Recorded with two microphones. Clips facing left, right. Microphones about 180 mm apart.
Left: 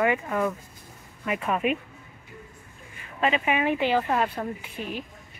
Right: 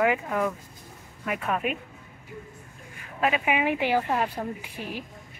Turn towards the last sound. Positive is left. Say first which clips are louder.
# left 1 dB
turn(degrees=-10)  # may be behind; listen again after turning